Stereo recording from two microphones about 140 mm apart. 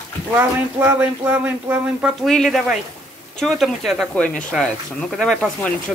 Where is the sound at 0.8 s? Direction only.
15° right (ahead or behind).